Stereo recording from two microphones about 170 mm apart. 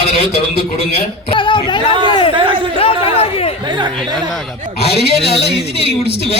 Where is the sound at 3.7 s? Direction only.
25° right (ahead or behind).